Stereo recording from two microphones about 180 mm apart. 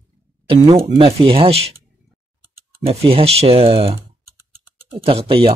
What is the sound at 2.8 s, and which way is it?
Speech, 35° right (ahead or behind).